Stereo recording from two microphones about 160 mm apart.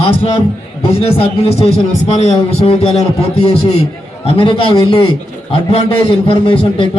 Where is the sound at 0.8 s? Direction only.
40° left (ahead or behind).